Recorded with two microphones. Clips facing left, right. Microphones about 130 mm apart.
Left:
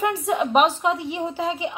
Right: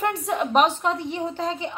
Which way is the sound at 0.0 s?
Centre (ahead or behind).